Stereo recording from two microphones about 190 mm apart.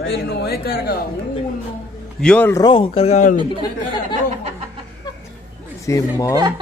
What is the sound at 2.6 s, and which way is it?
Speech, 25° left (ahead or behind).